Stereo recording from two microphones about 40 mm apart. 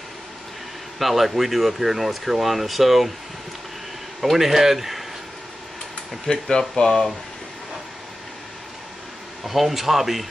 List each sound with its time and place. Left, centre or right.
0.9 s speech: centre
4.2 s speech: centre
6.2 s speech: centre
9.4 s speech: centre